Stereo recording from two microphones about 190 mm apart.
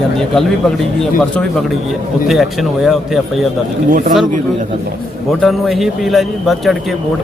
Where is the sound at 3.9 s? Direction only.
45° right (ahead or behind).